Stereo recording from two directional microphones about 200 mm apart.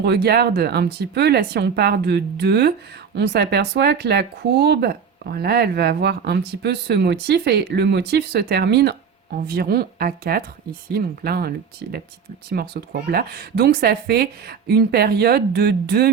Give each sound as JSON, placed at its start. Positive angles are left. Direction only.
{"t": 0.0, "sound": "speech", "side_deg": -55}